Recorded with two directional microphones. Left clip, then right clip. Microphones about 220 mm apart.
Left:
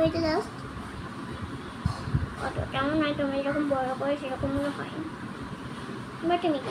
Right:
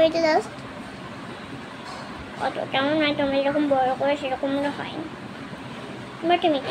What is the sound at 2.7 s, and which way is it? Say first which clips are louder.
Speech: right 5 dB; 10° right (ahead or behind).